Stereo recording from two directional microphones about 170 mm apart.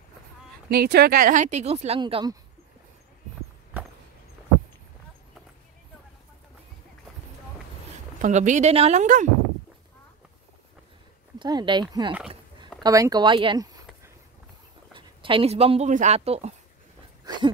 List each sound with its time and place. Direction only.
0.7 s speech: 75° right (ahead or behind); by 2.3 s 30° right (ahead or behind)
8.2 s speech: 45° right (ahead or behind)
11.3 s speech: 25° right (ahead or behind)
12.8 s speech: 20° right (ahead or behind); by 16.5 s 40° right (ahead or behind)
17.2 s dog: 25° right (ahead or behind)